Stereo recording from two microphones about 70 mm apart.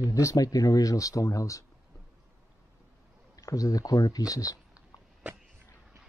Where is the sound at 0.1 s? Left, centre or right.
Left.